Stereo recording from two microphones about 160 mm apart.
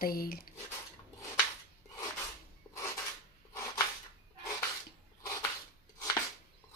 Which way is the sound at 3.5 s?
20° left (ahead or behind).